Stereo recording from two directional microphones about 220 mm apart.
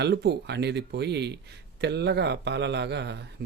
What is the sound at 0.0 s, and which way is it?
Speech, 50° right (ahead or behind).